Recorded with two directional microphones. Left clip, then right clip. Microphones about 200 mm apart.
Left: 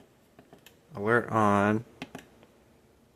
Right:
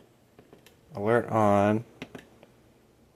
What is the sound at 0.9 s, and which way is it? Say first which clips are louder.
Speech: right 1 dB; centre (ahead or behind).